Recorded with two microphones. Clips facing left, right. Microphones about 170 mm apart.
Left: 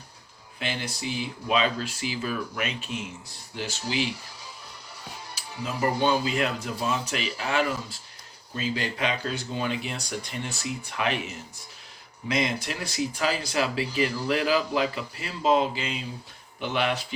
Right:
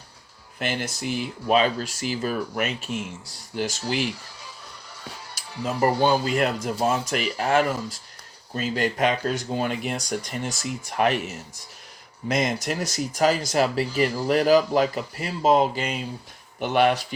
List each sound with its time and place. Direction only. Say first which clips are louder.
0.6 s speech: right 4 dB; 50° right (ahead or behind)
5.3 s speech: right 5 dB; 45° right (ahead or behind)
12.3 s speech: right 3 dB; 45° right (ahead or behind)